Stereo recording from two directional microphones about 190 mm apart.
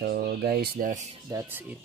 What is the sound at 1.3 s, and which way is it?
Speech, 15° right (ahead or behind).